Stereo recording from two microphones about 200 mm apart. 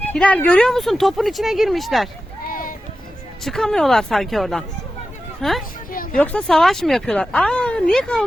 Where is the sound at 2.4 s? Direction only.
45° left (ahead or behind).